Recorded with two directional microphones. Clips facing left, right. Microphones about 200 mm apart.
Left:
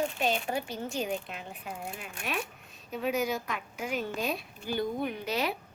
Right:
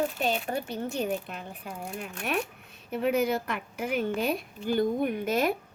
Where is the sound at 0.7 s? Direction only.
60° right (ahead or behind).